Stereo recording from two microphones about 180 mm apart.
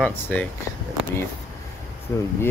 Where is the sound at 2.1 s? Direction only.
15° left (ahead or behind).